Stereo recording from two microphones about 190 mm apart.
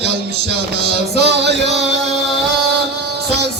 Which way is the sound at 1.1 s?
65° right (ahead or behind).